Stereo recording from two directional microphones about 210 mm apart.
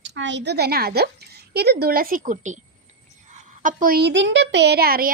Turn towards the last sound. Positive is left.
turn(degrees=-45)  # may be behind; listen again after turning